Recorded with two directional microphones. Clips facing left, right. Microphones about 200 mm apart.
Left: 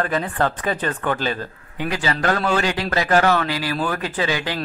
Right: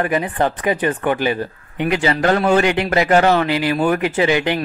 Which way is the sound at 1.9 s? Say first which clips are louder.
Right 5 dB; 25° right (ahead or behind).